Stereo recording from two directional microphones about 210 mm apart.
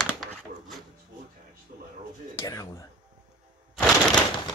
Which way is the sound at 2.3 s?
15° left (ahead or behind).